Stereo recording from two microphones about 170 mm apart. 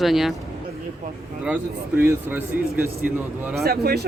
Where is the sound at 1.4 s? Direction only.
10° right (ahead or behind).